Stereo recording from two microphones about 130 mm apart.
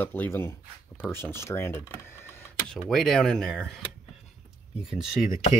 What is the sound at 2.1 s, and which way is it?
Printer, 20° left (ahead or behind).